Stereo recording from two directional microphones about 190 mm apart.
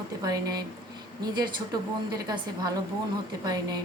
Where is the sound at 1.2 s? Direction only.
20° right (ahead or behind).